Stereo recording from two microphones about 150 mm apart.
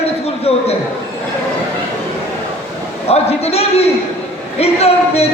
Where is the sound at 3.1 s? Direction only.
45° left (ahead or behind).